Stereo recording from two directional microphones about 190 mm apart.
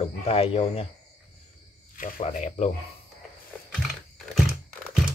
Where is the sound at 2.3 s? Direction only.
40° left (ahead or behind).